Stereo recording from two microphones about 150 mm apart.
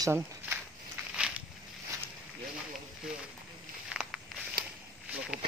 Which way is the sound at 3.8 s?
5° right (ahead or behind).